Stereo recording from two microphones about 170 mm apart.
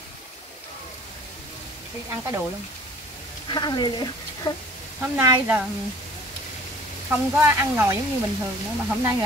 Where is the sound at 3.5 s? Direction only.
25° left (ahead or behind).